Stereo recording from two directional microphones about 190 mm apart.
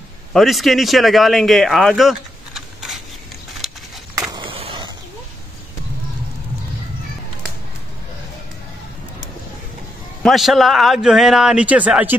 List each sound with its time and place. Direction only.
0.3 s speech: centre (ahead or behind)
3.6 s a sound: centre (ahead or behind)
4.3 s skateboard: 25° right (ahead or behind)
10.2 s a man's voice: centre (ahead or behind)